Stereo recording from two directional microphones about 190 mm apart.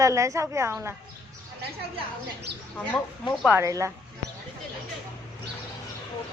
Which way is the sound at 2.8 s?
5° left (ahead or behind).